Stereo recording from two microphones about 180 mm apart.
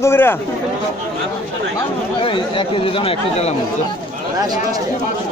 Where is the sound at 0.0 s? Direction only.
10° left (ahead or behind).